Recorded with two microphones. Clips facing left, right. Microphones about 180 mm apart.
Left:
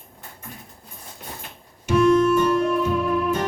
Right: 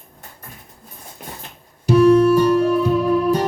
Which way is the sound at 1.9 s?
35° right (ahead or behind).